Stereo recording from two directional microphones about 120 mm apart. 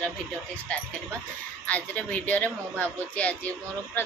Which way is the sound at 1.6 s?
10° left (ahead or behind).